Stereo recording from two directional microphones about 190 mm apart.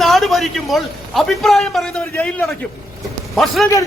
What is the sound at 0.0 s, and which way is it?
A man's voice, centre (ahead or behind).